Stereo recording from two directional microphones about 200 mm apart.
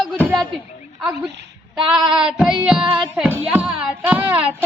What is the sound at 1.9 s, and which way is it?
Female singing, 5° right (ahead or behind).